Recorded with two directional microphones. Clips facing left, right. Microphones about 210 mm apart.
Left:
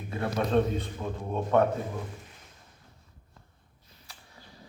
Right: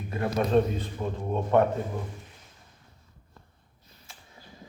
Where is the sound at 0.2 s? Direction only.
10° right (ahead or behind).